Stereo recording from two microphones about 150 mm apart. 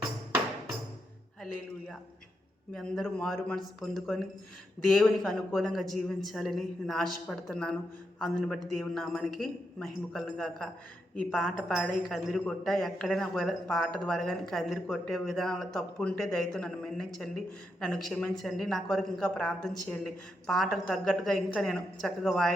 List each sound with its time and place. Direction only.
2.7 s speech: centre (ahead or behind)